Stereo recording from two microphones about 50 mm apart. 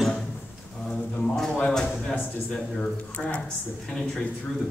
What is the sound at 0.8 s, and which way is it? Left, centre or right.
Speech, centre.